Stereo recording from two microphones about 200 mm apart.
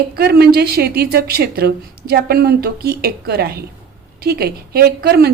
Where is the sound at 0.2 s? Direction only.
50° right (ahead or behind).